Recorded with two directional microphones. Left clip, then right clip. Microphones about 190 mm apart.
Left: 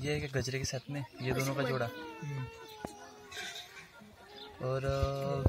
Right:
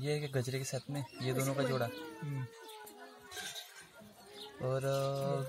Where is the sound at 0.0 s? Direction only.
Centre (ahead or behind).